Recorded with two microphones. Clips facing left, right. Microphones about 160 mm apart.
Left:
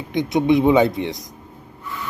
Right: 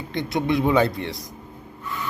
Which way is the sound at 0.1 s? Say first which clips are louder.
Left 6 dB; 20° left (ahead or behind).